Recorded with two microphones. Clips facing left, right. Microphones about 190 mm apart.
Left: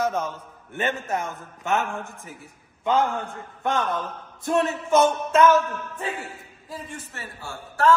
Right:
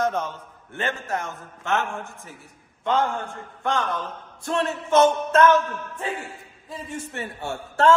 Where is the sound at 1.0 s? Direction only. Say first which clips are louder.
Left 1 dB; 20° left (ahead or behind).